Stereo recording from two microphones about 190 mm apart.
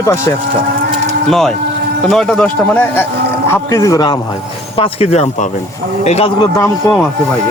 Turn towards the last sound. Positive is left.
turn(degrees=15)  # may be behind; listen again after turning